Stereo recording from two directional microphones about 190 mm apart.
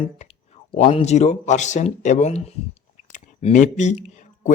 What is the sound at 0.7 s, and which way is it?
Speech, 30° left (ahead or behind).